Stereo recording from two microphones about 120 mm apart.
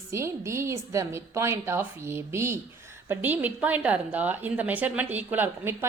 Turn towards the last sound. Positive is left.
turn(degrees=-20)  # may be behind; listen again after turning